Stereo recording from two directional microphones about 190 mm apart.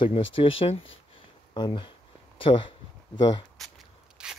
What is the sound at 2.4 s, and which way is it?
Speech, 30° left (ahead or behind).